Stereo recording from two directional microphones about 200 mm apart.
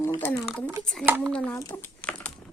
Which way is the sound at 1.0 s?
10° right (ahead or behind).